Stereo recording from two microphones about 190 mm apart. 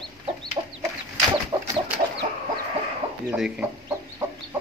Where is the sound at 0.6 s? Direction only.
20° right (ahead or behind).